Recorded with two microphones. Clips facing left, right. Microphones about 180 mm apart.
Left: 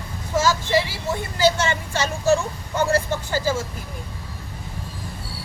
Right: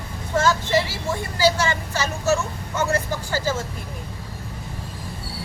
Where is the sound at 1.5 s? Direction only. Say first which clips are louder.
Even; 25° left (ahead or behind).